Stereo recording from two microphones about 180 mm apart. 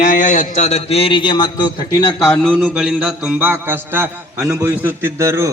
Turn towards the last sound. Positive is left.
turn(degrees=-15)  # may be behind; listen again after turning